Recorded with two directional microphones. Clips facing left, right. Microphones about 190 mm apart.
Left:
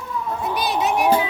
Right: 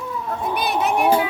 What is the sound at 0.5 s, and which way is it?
Speech, 60° right (ahead or behind).